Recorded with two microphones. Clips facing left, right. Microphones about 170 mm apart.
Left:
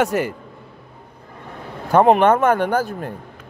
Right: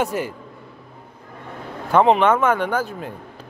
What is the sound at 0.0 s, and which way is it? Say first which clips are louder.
Speech: left 4 dB; 75° left (ahead or behind).